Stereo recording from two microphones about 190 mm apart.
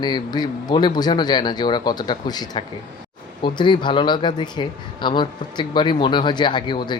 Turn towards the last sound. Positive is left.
turn(degrees=25)  # may be behind; listen again after turning